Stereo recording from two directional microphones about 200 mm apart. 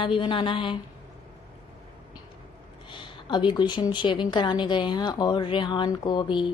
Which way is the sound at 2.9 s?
25° left (ahead or behind).